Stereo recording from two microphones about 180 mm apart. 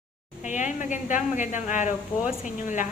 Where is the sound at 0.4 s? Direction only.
45° left (ahead or behind).